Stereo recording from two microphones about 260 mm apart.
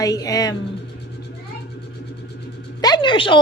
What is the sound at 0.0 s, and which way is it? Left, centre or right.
Speech, centre.